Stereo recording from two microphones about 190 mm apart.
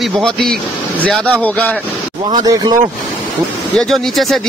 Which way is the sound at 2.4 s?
20° right (ahead or behind).